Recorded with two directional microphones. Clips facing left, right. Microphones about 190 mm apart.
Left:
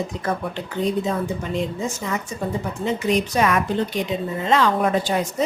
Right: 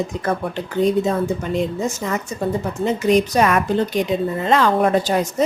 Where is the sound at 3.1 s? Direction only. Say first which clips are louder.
Right 4 dB; 45° right (ahead or behind).